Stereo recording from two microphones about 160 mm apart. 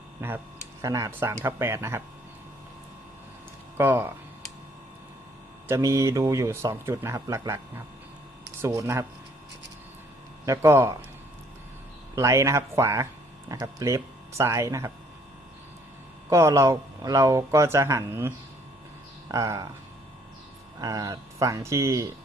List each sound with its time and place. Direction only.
0.2 s speech: 15° right (ahead or behind)
3.8 s speech: 15° right (ahead or behind)
5.6 s speech: 15° right (ahead or behind)
8.6 s speech: 20° right (ahead or behind)
10.4 s speech: 20° right (ahead or behind)
12.1 s speech: 20° right (ahead or behind)
16.3 s speech: 20° right (ahead or behind)
20.8 s speech: 25° right (ahead or behind)